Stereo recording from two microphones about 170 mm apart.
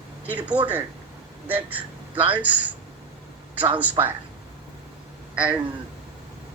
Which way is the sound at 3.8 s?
10° right (ahead or behind).